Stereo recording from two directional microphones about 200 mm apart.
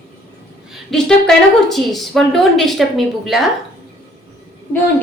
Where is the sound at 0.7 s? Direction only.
Centre (ahead or behind).